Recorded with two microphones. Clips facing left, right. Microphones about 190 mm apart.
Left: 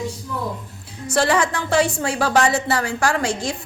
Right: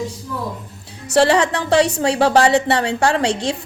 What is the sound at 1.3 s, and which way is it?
Speech, 35° right (ahead or behind).